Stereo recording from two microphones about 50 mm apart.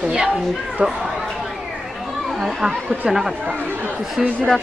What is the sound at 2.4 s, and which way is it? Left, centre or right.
Speech, centre.